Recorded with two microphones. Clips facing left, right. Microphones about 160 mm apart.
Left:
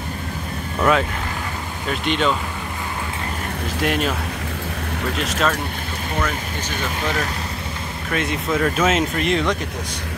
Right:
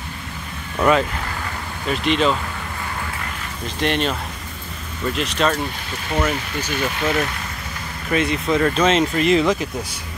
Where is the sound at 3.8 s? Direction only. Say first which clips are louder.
Right 1 dB; 5° left (ahead or behind).